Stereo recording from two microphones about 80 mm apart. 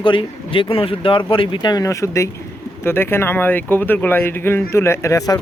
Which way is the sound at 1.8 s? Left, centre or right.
Left.